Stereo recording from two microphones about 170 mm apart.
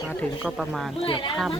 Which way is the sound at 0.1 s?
5° left (ahead or behind).